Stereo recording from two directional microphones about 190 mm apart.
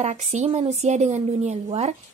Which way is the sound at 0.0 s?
35° right (ahead or behind).